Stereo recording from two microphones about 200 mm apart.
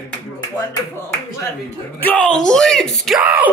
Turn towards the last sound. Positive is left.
turn(degrees=-10)  # may be behind; listen again after turning